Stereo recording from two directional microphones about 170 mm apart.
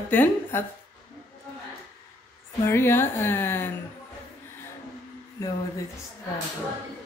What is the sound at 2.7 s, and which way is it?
A woman's voice, 15° left (ahead or behind).